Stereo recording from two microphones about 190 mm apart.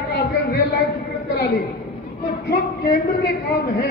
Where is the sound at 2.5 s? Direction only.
55° left (ahead or behind).